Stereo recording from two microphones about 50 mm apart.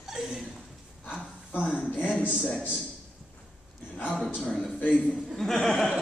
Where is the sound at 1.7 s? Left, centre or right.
Left.